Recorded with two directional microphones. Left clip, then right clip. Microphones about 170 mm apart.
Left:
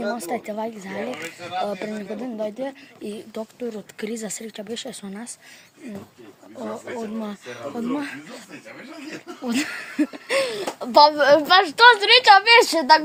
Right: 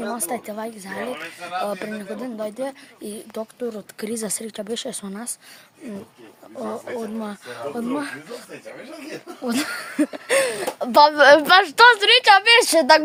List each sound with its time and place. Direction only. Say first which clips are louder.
0.0 s speech: left 1 dB; 35° right (ahead or behind); by 1.0 s 20° right (ahead or behind)
1.6 s speech: right 1 dB; 35° right (ahead or behind)
6.9 s speech: right 1 dB; 30° right (ahead or behind)
9.4 s speech: right 1 dB; 25° right (ahead or behind); by 13.0 s 55° right (ahead or behind)